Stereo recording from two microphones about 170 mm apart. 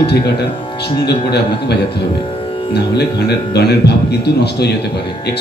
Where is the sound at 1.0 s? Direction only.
75° left (ahead or behind).